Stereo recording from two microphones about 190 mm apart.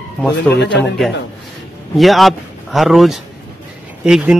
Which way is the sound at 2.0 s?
Centre (ahead or behind).